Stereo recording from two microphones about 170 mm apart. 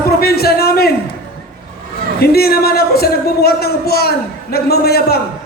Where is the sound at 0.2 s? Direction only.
65° left (ahead or behind).